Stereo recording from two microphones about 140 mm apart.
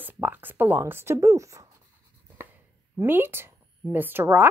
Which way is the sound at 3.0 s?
15° right (ahead or behind).